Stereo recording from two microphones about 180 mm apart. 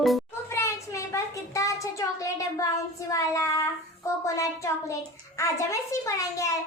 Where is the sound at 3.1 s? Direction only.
20° left (ahead or behind).